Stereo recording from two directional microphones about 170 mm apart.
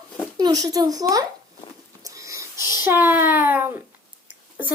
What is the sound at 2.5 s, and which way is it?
Child singing, 20° left (ahead or behind).